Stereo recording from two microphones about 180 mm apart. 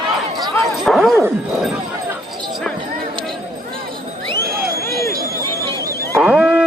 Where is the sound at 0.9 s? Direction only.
Centre (ahead or behind).